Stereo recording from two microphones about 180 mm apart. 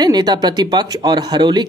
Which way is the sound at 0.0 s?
25° right (ahead or behind).